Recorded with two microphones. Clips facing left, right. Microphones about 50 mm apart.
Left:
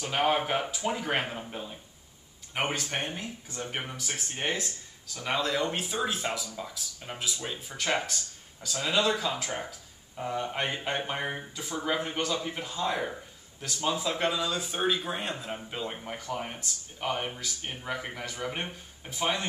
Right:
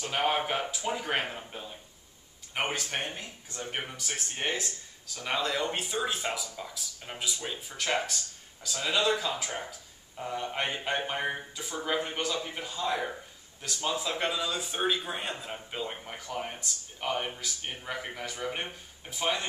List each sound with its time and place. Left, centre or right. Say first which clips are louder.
0.0 s speech: left 2 dB; centre